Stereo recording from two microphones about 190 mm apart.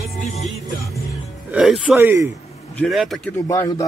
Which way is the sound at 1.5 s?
5° right (ahead or behind).